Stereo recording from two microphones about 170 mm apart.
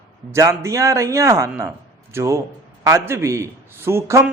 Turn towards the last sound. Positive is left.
turn(degrees=-15)  # may be behind; listen again after turning